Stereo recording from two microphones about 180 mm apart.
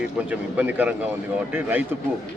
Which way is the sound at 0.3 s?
10° right (ahead or behind).